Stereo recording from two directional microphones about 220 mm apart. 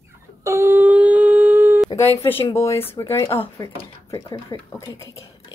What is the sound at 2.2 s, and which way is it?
Speech, 15° left (ahead or behind).